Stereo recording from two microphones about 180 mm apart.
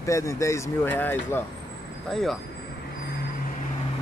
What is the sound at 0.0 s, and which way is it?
Speech, 15° left (ahead or behind).